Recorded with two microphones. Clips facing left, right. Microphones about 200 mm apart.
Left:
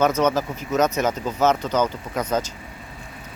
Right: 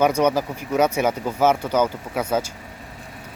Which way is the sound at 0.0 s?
10° right (ahead or behind).